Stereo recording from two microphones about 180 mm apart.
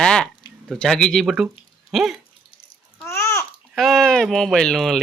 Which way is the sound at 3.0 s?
15° left (ahead or behind).